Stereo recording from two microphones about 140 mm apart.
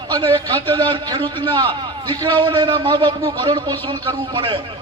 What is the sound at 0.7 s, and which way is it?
A man's voice, 35° right (ahead or behind).